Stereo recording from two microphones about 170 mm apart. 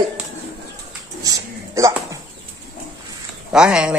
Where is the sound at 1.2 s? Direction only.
20° right (ahead or behind).